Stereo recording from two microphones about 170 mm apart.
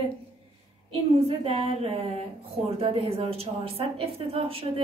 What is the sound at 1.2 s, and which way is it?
A woman's voice, 35° right (ahead or behind).